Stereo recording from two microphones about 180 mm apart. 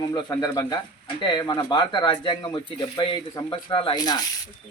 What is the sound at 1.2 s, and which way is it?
Speech, 20° left (ahead or behind).